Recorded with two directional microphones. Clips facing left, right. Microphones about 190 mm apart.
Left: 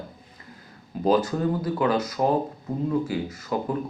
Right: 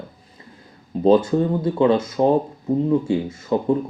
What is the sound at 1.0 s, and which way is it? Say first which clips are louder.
Speech: right 6 dB; 25° right (ahead or behind).